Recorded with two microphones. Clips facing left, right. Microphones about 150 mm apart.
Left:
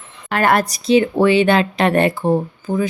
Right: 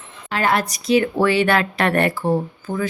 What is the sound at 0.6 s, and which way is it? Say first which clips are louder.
Speech: left 3 dB; 30° left (ahead or behind).